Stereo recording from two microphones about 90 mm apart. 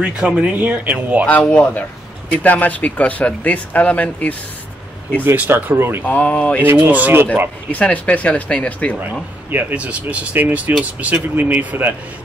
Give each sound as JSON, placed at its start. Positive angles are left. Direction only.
{"t": 0.0, "sound": "speech", "side_deg": -10}
{"t": 1.5, "sound": "a man's voice", "side_deg": 20}
{"t": 5.2, "sound": "speech", "side_deg": -25}
{"t": 6.0, "sound": "speech", "side_deg": 15}
{"t": 6.6, "sound": "speech", "side_deg": -20}
{"t": 7.7, "sound": "speech", "side_deg": 15}
{"t": 9.5, "sound": "speech", "side_deg": -25}